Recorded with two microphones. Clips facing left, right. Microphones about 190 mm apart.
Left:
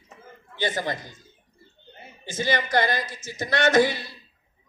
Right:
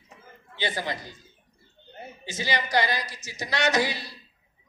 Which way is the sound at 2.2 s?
50° left (ahead or behind).